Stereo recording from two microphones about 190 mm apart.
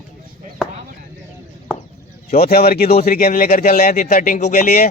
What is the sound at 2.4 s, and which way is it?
A man's voice, 55° left (ahead or behind).